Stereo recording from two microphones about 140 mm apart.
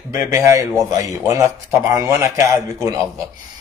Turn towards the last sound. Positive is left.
turn(degrees=-25)  # may be behind; listen again after turning